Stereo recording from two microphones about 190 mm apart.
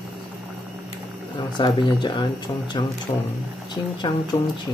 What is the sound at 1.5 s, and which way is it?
Speech, 25° left (ahead or behind).